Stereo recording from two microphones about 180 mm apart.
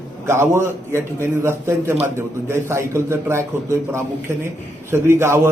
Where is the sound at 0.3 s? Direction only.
15° right (ahead or behind).